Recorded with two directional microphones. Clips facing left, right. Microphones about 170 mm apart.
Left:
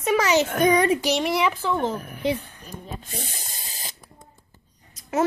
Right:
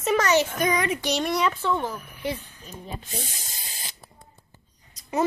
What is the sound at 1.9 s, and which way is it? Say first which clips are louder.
Speech: left 6 dB; 50° left (ahead or behind).